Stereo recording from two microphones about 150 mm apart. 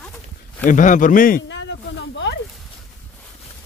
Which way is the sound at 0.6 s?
60° left (ahead or behind).